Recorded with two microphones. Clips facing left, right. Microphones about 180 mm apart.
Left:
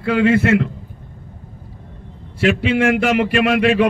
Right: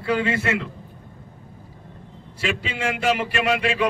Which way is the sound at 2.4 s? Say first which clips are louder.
Left 11 dB; 60° left (ahead or behind).